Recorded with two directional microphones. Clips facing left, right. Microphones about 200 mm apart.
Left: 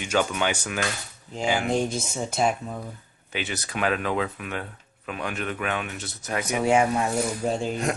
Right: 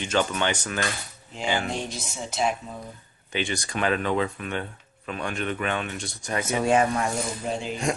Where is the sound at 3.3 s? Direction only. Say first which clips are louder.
Right 3 dB; 5° left (ahead or behind).